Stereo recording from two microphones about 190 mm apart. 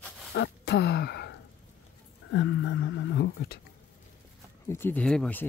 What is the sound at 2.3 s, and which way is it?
Speech, 85° left.